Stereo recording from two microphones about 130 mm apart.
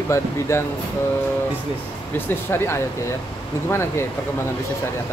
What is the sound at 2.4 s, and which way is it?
Speech, 20° left (ahead or behind).